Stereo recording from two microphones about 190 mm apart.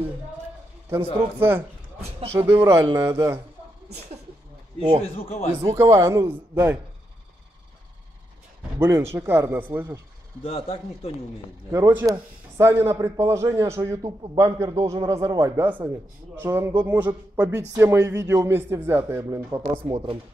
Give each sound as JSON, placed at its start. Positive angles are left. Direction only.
{"t": 0.8, "sound": "a man's voice", "side_deg": -10}
{"t": 2.0, "sound": "speech", "side_deg": -35}
{"t": 2.3, "sound": "a man's voice", "side_deg": -15}
{"t": 4.7, "sound": "speech", "side_deg": -25}
{"t": 5.0, "sound": "speech", "side_deg": 30}
{"t": 5.6, "sound": "a man's voice", "side_deg": -15}
{"t": 8.7, "sound": "a man's voice", "side_deg": -15}
{"t": 10.4, "sound": "speech", "side_deg": 30}
{"t": 11.7, "sound": "a man's voice", "side_deg": -15}